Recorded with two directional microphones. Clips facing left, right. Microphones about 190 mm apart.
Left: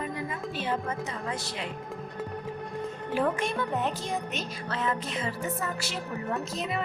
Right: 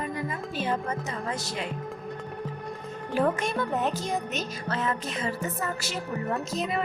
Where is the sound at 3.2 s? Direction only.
40° right (ahead or behind).